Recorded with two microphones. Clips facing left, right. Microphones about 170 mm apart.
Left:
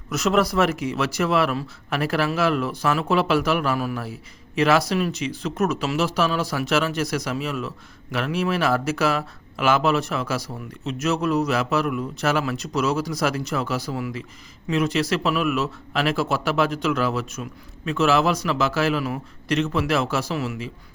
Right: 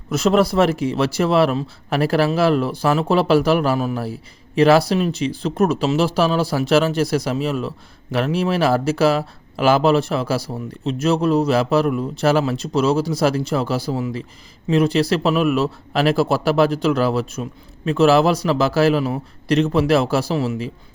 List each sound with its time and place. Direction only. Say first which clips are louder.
0.1 s speech: right 4 dB; 30° right (ahead or behind)